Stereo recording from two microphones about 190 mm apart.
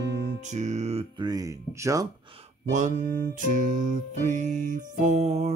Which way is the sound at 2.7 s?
40° right (ahead or behind).